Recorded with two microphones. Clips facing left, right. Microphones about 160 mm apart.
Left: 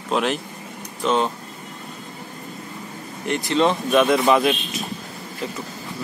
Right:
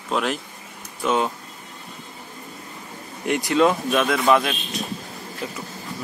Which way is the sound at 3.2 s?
10° right (ahead or behind).